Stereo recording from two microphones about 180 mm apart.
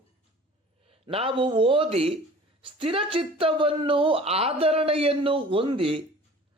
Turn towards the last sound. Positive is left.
turn(degrees=-30)  # may be behind; listen again after turning